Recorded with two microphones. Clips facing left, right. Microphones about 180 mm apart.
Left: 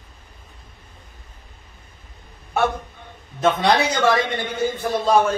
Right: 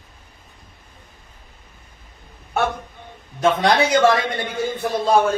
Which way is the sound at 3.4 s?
Centre (ahead or behind).